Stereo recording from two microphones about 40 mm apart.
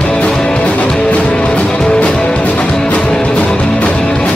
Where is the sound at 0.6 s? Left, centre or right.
Left.